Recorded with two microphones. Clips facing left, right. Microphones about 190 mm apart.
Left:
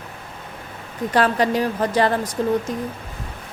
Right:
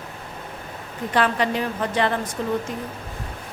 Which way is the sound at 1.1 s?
40° left (ahead or behind).